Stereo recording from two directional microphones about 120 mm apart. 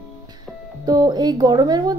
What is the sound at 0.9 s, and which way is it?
Speech, 35° right (ahead or behind).